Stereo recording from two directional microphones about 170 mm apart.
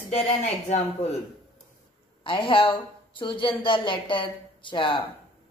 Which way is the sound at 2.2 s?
30° left (ahead or behind).